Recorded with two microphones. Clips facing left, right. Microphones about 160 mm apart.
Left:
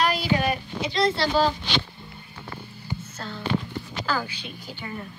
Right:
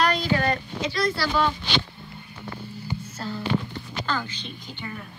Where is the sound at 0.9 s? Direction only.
25° left (ahead or behind).